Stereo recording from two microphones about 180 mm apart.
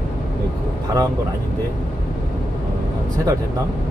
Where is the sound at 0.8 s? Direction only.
20° right (ahead or behind).